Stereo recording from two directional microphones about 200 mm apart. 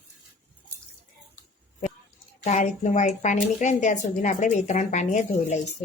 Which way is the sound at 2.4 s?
35° left (ahead or behind).